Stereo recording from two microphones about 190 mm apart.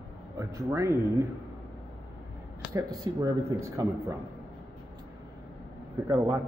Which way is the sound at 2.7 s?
20° right (ahead or behind).